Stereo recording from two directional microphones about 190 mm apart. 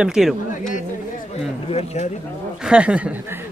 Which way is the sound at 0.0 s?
5° right (ahead or behind).